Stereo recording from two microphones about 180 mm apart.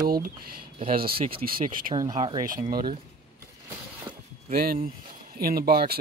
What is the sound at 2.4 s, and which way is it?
Speech, 50° right (ahead or behind).